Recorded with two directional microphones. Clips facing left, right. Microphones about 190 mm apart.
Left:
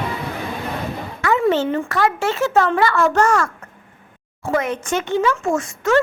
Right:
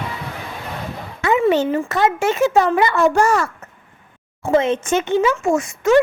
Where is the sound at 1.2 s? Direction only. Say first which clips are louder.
Right 2 dB; 20° right (ahead or behind).